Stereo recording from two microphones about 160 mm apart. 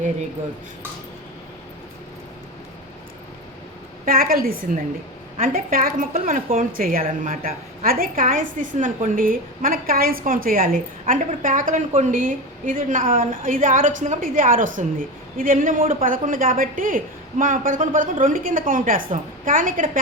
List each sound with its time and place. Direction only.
4.0 s a woman's voice: 70° right (ahead or behind)